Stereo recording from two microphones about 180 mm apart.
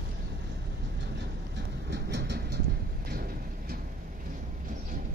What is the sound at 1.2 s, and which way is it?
Train, 70° right (ahead or behind).